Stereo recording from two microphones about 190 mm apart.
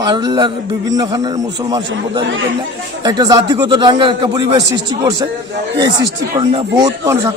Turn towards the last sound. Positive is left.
turn(degrees=-15)  # may be behind; listen again after turning